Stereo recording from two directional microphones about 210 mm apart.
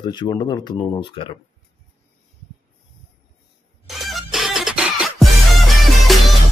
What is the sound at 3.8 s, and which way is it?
Music, centre (ahead or behind).